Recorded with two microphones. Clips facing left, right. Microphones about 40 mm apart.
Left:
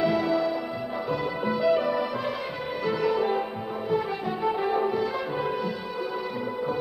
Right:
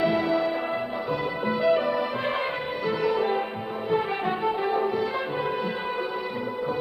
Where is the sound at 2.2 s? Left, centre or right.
Right.